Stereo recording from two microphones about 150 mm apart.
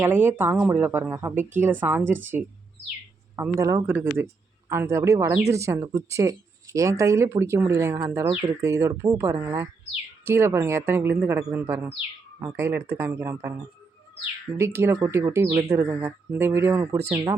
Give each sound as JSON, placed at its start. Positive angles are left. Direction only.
{"t": 0.0, "sound": "speech", "side_deg": -15}
{"t": 3.4, "sound": "speech", "side_deg": -15}
{"t": 14.6, "sound": "speech", "side_deg": -15}